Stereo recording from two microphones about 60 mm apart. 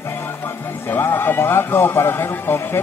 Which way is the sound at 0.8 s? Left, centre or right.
Left.